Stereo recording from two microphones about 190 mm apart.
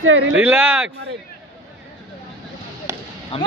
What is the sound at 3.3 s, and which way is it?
Speech, 30° left (ahead or behind).